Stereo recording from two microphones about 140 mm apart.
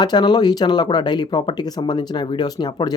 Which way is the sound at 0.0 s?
30° left (ahead or behind).